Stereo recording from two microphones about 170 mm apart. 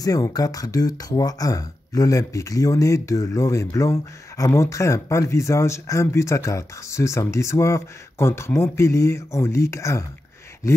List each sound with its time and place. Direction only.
0.0 s speech: 20° left (ahead or behind)